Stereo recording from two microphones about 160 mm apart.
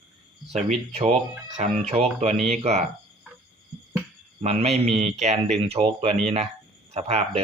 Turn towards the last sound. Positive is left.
turn(degrees=-40)  # may be behind; listen again after turning